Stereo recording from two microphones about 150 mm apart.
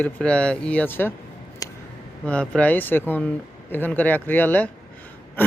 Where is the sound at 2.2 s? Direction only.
5° left (ahead or behind).